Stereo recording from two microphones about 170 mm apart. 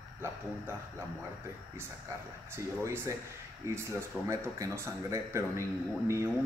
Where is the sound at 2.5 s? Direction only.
15° right (ahead or behind).